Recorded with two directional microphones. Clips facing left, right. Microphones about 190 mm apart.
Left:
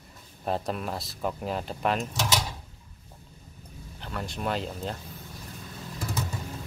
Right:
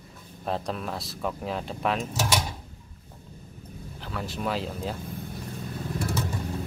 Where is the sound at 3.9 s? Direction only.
Centre (ahead or behind).